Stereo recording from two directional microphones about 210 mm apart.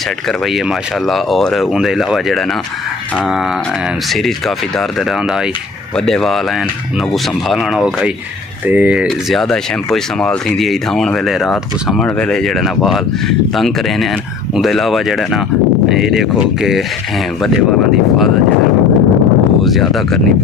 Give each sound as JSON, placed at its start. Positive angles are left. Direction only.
{"t": 1.0, "sound": "speech", "side_deg": 0}
{"t": 5.9, "sound": "speech", "side_deg": 0}
{"t": 14.5, "sound": "speech", "side_deg": 0}
{"t": 19.6, "sound": "speech", "side_deg": 0}